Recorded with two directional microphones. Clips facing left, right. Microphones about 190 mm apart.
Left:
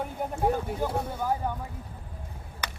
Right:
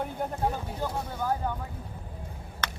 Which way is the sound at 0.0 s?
10° left (ahead or behind).